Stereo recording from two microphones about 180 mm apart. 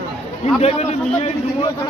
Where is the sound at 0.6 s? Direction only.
35° left (ahead or behind).